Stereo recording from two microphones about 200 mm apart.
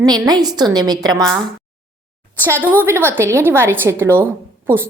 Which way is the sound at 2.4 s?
10° right (ahead or behind).